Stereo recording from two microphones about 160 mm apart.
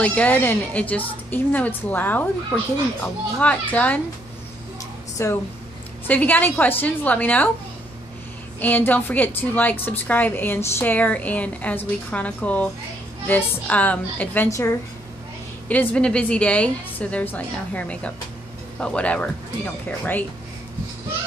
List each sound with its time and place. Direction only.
0.0 s a woman's voice: 10° left (ahead or behind)
3.3 s a woman's voice: 10° left (ahead or behind)
5.2 s a woman's voice: 15° left (ahead or behind)
8.5 s a woman's voice: 10° left (ahead or behind)